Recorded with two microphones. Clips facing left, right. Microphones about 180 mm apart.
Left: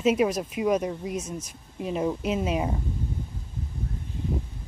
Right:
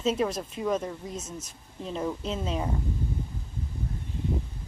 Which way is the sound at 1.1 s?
25° right (ahead or behind).